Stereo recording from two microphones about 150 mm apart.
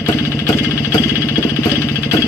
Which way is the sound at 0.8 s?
20° left (ahead or behind).